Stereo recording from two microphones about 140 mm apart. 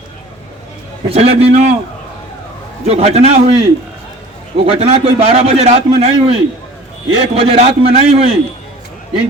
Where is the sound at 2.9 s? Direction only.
50° right (ahead or behind).